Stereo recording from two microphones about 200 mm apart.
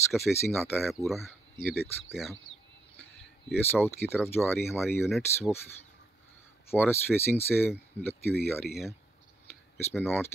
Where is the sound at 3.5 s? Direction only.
10° left (ahead or behind).